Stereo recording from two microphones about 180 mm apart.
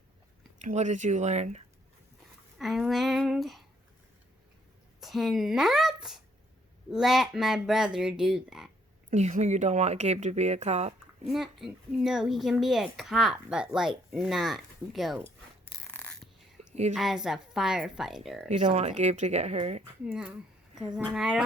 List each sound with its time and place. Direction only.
0.6 s speech: 40° right (ahead or behind)
2.6 s speech: centre (ahead or behind)
4.9 s speech: centre (ahead or behind)
9.0 s speech: 40° right (ahead or behind)
11.3 s speech: centre (ahead or behind)
15.9 s a sound: 5° left (ahead or behind)
16.9 s speech: centre (ahead or behind)
18.4 s speech: 40° right (ahead or behind)
20.1 s speech: 5° right (ahead or behind)